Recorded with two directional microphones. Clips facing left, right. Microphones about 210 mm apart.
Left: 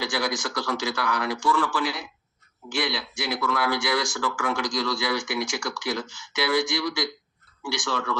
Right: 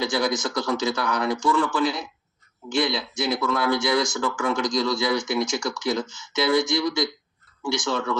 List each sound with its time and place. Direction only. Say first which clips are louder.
0.0 s speech: right 4 dB; 20° right (ahead or behind)